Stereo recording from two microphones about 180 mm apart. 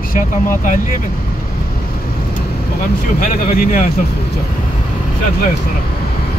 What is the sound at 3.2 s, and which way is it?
Speech, 50° left (ahead or behind).